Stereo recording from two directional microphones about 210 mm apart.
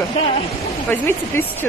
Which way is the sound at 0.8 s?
10° left (ahead or behind).